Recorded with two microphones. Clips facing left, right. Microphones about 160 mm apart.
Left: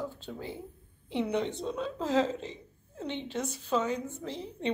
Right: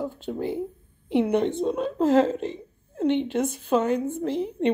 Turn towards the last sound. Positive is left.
turn(degrees=-55)  # may be behind; listen again after turning